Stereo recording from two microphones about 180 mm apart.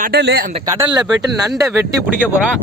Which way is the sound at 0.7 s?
15° right (ahead or behind).